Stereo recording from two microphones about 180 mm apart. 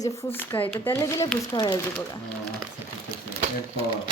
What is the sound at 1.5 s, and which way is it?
Speech, 25° left (ahead or behind).